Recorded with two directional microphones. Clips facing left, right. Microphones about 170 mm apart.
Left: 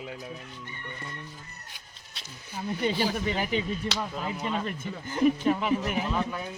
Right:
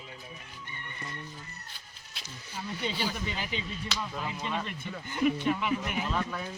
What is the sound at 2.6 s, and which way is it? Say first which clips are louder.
Speech: left 6 dB; 50° left (ahead or behind).